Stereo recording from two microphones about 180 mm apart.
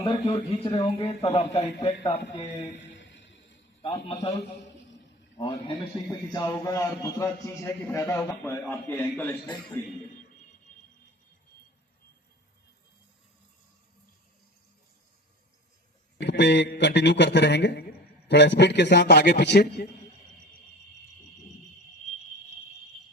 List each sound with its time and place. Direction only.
0.0 s speech: 35° left (ahead or behind)
3.8 s speech: 30° left (ahead or behind)
5.4 s a man's voice: 30° left (ahead or behind); by 9.9 s 10° left (ahead or behind)
16.2 s speech: 70° left (ahead or behind)